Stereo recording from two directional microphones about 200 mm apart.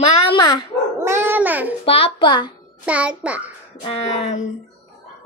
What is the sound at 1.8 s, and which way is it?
Speech, 25° left (ahead or behind).